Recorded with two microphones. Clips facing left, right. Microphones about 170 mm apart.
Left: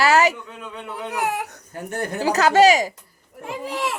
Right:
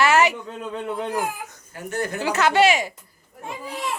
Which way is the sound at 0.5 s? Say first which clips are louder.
Right 5 dB; 35° right (ahead or behind).